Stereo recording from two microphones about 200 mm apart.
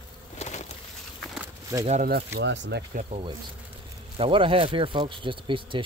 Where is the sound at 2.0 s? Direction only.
55° right (ahead or behind).